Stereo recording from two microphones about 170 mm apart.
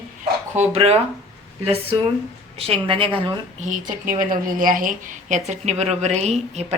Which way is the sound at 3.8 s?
55° right (ahead or behind).